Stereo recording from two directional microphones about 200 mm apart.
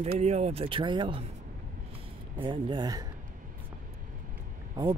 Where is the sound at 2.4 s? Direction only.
25° right (ahead or behind).